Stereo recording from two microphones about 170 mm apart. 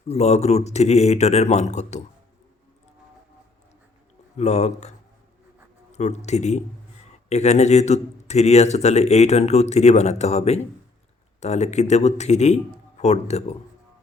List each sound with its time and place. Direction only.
0.1 s speech: 40° left (ahead or behind)
4.4 s speech: 40° left (ahead or behind)